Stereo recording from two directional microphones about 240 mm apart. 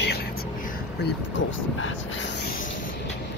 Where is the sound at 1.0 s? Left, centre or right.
Left.